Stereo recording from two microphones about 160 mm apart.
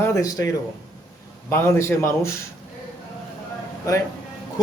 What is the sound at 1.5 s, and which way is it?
Speech, 15° left (ahead or behind).